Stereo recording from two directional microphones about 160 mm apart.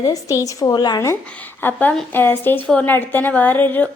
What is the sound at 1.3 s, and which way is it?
A woman's voice, 10° left (ahead or behind).